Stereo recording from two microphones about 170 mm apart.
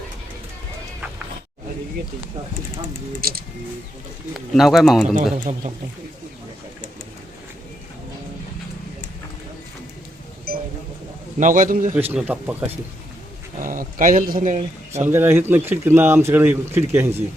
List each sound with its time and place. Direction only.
3.2 s speech: 60° right (ahead or behind)
4.4 s speech: centre (ahead or behind)
5.4 s a man's voice: 45° right (ahead or behind)
10.5 s a sound: 60° right (ahead or behind)
11.3 s a man's voice: 50° right (ahead or behind)
11.9 s a man's voice: 10° right (ahead or behind)
13.6 s a man's voice: 55° right (ahead or behind)
15.0 s a man's voice: 15° right (ahead or behind)